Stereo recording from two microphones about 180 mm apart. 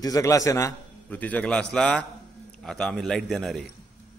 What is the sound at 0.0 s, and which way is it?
A man's voice, 20° left (ahead or behind).